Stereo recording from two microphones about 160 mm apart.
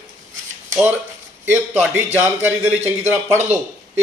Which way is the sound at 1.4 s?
10° right (ahead or behind).